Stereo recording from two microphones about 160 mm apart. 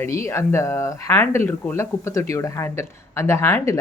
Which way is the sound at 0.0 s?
15° left (ahead or behind).